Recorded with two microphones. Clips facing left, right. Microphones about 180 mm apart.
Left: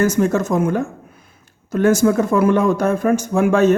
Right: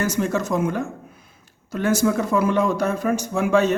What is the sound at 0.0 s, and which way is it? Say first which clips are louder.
Speech: left 6 dB; 50° left (ahead or behind).